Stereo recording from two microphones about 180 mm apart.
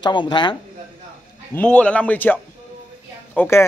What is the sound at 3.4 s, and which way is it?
Speech, 15° left (ahead or behind).